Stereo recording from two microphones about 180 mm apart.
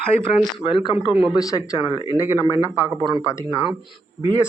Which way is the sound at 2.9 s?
25° right (ahead or behind).